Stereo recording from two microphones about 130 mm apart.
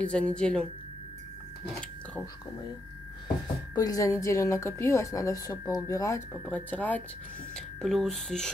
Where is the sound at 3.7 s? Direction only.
25° left (ahead or behind).